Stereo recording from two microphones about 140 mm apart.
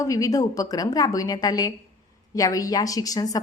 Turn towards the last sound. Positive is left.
turn(degrees=25)  # may be behind; listen again after turning